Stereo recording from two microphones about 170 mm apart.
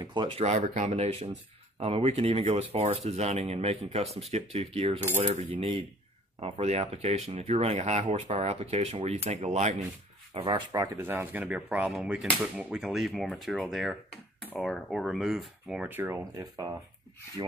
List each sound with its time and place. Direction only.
0.0 s speech: 25° right (ahead or behind)
0.4 s speech: 40° right (ahead or behind)
10.3 s speech: 25° right (ahead or behind); by 16.2 s 10° right (ahead or behind)